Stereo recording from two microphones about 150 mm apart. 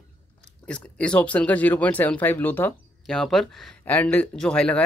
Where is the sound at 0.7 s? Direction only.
5° left (ahead or behind).